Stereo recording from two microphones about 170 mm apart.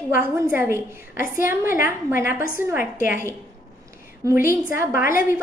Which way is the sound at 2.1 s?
55° left (ahead or behind).